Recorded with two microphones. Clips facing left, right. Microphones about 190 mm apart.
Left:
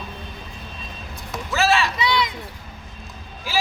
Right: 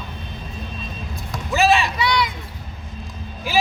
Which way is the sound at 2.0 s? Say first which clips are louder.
Right 1 dB; 20° left (ahead or behind).